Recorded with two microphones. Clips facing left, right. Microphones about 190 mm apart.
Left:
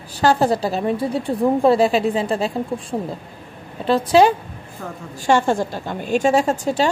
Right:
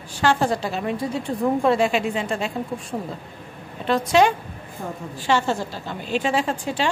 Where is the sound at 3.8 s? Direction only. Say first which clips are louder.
Left 4 dB; 30° left (ahead or behind).